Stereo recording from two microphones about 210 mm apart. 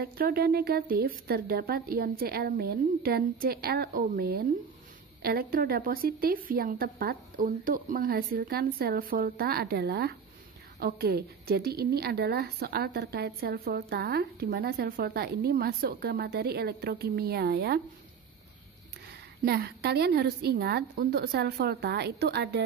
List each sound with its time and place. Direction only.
0.0 s a woman's voice: 45° right (ahead or behind)
19.4 s a woman's voice: 50° right (ahead or behind)